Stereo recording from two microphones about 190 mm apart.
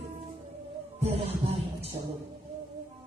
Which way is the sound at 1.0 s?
30° right (ahead or behind).